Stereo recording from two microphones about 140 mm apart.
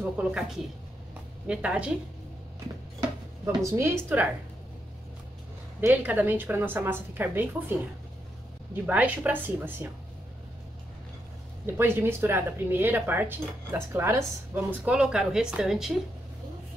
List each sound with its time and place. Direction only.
0.2 s speech: 10° right (ahead or behind)
1.5 s speech: 10° right (ahead or behind)
3.4 s speech: 20° right (ahead or behind)
5.8 s speech: 15° right (ahead or behind)
8.8 s speech: 10° right (ahead or behind)
11.6 s speech: 15° right (ahead or behind)